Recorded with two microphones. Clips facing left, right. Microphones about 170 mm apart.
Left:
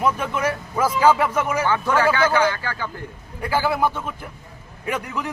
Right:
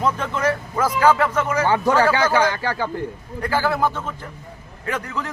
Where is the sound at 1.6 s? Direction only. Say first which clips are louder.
Right 3 dB; 40° right (ahead or behind).